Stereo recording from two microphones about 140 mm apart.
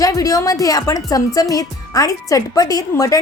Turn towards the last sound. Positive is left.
turn(degrees=25)  # may be behind; listen again after turning